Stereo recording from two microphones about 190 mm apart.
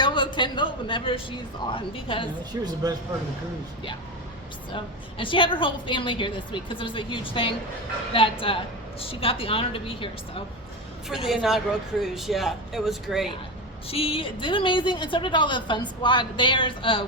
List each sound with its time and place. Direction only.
0.0 s a man's voice: 25° left (ahead or behind)
2.5 s speech: 15° right (ahead or behind)
4.7 s a woman's voice: 25° left (ahead or behind)
11.1 s a man's voice: centre (ahead or behind)
13.8 s a woman's voice: 30° left (ahead or behind)